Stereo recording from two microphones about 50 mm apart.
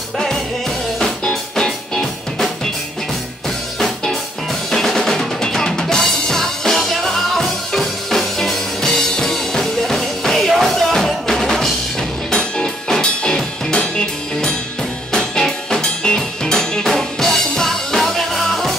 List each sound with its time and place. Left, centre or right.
0.9 s music: centre
3.8 s music: centre
4.6 s drum: centre
10.5 s music: centre
12.3 s music: centre